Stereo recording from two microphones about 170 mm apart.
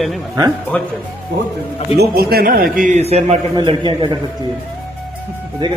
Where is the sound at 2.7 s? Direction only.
50° right (ahead or behind).